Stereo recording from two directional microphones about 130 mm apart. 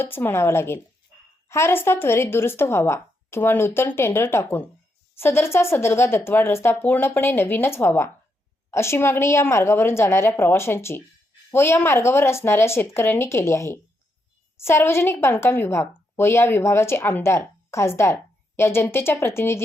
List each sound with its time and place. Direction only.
0.0 s a woman's voice: 15° left (ahead or behind)